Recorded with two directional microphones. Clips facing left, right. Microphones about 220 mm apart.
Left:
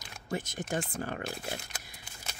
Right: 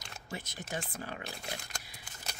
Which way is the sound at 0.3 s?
50° left (ahead or behind).